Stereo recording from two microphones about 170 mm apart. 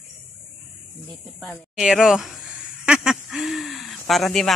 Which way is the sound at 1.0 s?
Centre (ahead or behind).